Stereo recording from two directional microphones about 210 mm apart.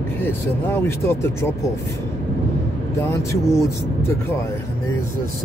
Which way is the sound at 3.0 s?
15° left (ahead or behind).